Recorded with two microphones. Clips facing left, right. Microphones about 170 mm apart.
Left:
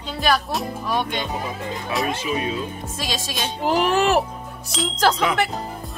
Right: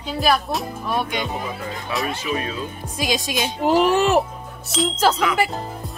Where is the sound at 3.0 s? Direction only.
15° right (ahead or behind).